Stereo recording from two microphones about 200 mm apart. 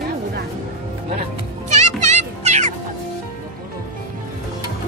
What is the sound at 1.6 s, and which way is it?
Music, 35° right (ahead or behind).